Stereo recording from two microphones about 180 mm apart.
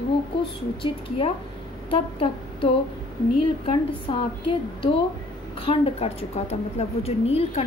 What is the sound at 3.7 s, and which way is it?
Speech, 30° left (ahead or behind).